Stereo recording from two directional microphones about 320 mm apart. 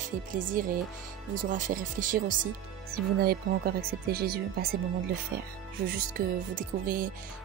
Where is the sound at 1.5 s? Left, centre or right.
Right.